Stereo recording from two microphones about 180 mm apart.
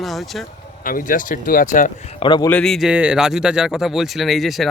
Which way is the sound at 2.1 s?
25° left (ahead or behind).